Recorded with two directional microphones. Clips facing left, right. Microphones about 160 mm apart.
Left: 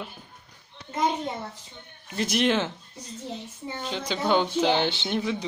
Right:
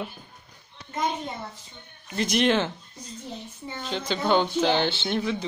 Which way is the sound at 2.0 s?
5° left (ahead or behind).